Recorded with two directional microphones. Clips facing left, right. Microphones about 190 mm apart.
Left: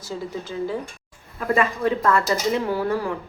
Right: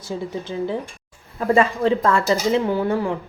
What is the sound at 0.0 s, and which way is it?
Speech, 20° right (ahead or behind).